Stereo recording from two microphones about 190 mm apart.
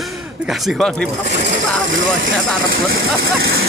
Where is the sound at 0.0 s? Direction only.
Centre (ahead or behind).